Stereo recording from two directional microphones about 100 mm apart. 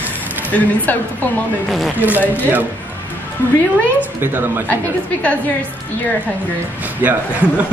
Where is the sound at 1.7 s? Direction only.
Centre (ahead or behind).